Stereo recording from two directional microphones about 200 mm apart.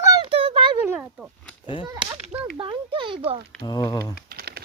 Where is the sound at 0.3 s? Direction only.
30° right (ahead or behind).